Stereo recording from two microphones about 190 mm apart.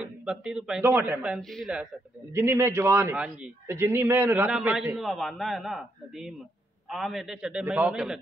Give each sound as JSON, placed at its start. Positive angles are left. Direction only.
{"t": 0.0, "sound": "a man's voice", "side_deg": -5}
{"t": 2.3, "sound": "a man's voice", "side_deg": -15}